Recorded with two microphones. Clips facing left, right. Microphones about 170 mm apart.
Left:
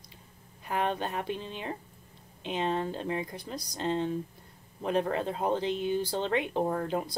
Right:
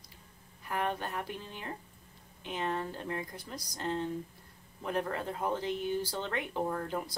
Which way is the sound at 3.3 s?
65° left (ahead or behind).